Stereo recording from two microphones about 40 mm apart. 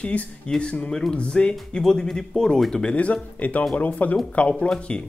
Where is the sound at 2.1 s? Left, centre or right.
Centre.